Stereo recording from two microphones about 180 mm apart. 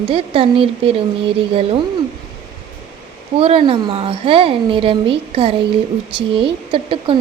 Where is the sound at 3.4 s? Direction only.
30° right (ahead or behind).